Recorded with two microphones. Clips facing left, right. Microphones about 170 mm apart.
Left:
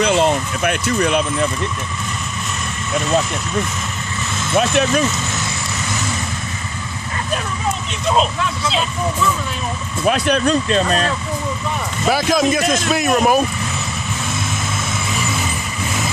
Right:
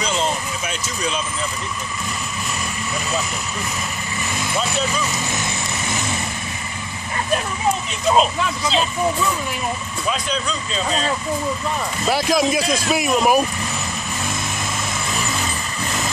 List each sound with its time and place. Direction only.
0.0 s vehicle: 60° left (ahead or behind)
4.6 s speech: 70° left (ahead or behind)
8.1 s speech: centre (ahead or behind)
10.0 s speech: 65° left (ahead or behind)
12.1 s speech: centre (ahead or behind)